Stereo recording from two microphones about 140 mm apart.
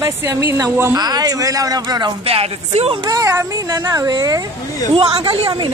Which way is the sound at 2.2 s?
45° right (ahead or behind).